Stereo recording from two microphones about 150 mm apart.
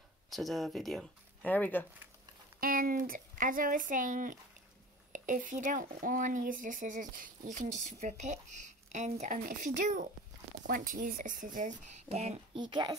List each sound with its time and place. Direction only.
0.3 s speech: centre (ahead or behind)
2.6 s speech: 70° right (ahead or behind); by 12.4 s 45° right (ahead or behind)
12.5 s speech: 30° right (ahead or behind)